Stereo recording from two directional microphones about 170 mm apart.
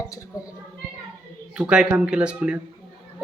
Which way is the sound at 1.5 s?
5° right (ahead or behind).